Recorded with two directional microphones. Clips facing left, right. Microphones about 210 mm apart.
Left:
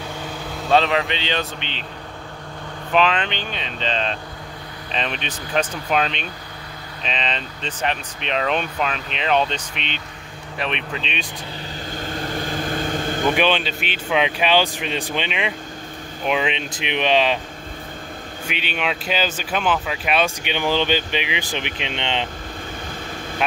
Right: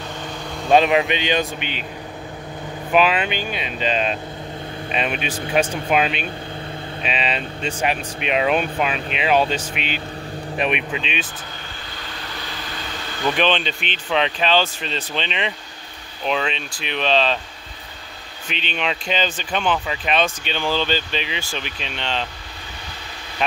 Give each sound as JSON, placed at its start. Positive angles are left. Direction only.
{"t": 0.7, "sound": "speech", "side_deg": -15}
{"t": 2.9, "sound": "speech", "side_deg": -10}
{"t": 12.0, "sound": "vehicle", "side_deg": 45}
{"t": 13.4, "sound": "speech", "side_deg": 5}
{"t": 18.5, "sound": "speech", "side_deg": 10}